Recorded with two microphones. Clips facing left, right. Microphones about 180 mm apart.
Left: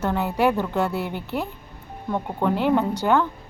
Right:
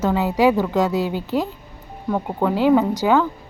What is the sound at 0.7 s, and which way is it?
Speech, 90° right.